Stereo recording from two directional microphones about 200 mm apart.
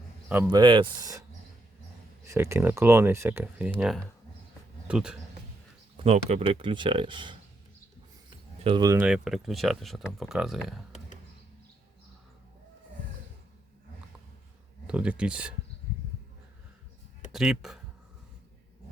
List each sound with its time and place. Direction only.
0.3 s speech: 5° right (ahead or behind)
0.5 s speech: 25° right (ahead or behind)
2.2 s speech: 15° right (ahead or behind)
6.0 s speech: 30° right (ahead or behind)
8.6 s speech: 20° right (ahead or behind)
9.0 s speech: 5° right (ahead or behind)
14.8 s speech: 5° right (ahead or behind)
17.3 s speech: centre (ahead or behind)